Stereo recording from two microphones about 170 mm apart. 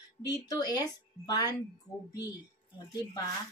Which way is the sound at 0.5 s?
25° left (ahead or behind).